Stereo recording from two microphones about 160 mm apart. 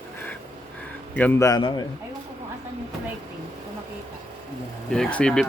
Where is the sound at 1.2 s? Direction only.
15° left (ahead or behind).